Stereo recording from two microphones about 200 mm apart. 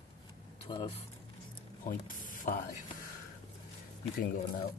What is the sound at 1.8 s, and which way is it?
Speech, 40° left (ahead or behind).